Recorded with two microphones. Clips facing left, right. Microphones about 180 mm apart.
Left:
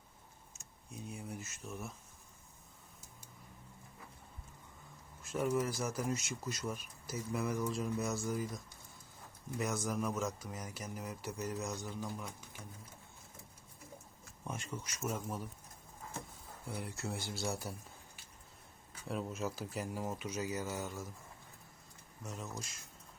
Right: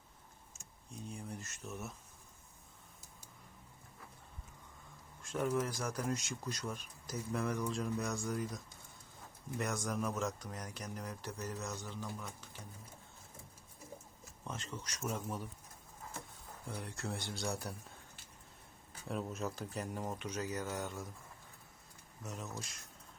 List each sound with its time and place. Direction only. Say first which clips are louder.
0.9 s a sound: left 1 dB; 5° left (ahead or behind)
5.2 s speech: left 1 dB; 5° left (ahead or behind)
14.4 s speech: left 2 dB; 10° left (ahead or behind)
16.6 s speech: left 1 dB; 5° left (ahead or behind)
19.0 s speech: left 1 dB; centre (ahead or behind)
22.2 s speech: even; centre (ahead or behind)